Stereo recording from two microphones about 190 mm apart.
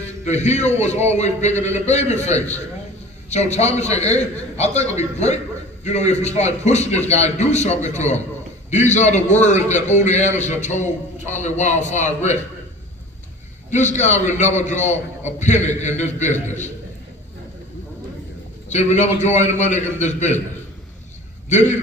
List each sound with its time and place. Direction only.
0.3 s a man's voice: 35° left (ahead or behind)
13.7 s a man's voice: 40° left (ahead or behind)
18.7 s a man's voice: 35° left (ahead or behind)
21.5 s a man's voice: 40° left (ahead or behind)